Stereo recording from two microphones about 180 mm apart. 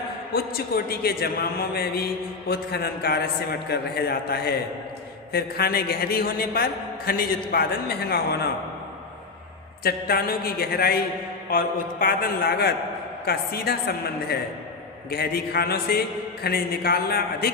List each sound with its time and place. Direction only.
0.3 s a man's voice: 60° left (ahead or behind)
9.8 s a man's voice: 55° left (ahead or behind)